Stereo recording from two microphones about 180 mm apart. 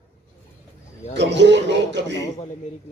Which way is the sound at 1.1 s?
75° right (ahead or behind).